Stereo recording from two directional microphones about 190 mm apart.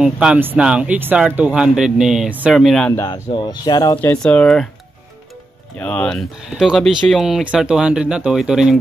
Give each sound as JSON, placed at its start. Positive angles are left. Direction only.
{"t": 0.0, "sound": "speech", "side_deg": -5}
{"t": 3.1, "sound": "speech", "side_deg": 25}
{"t": 4.0, "sound": "speech", "side_deg": 5}
{"t": 5.8, "sound": "speech", "side_deg": 5}